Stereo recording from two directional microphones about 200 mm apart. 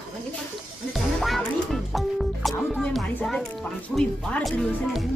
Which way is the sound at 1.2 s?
Centre (ahead or behind).